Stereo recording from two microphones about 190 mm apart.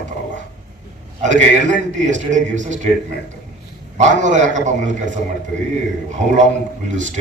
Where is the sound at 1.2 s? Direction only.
40° right (ahead or behind).